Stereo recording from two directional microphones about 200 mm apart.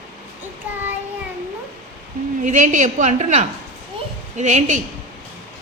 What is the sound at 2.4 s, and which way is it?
A woman's voice, 40° right (ahead or behind).